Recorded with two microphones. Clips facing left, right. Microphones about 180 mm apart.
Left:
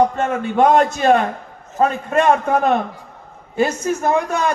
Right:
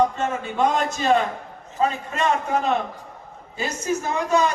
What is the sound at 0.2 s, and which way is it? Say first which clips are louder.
A man's voice: left 6 dB; 55° left (ahead or behind).